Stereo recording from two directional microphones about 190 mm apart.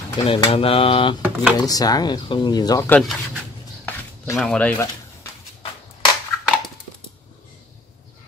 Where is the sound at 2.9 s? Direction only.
Centre (ahead or behind).